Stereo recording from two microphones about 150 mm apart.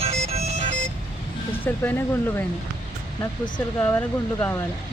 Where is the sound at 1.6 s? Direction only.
15° left (ahead or behind).